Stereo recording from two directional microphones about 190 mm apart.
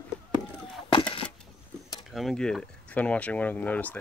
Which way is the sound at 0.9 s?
25° left (ahead or behind).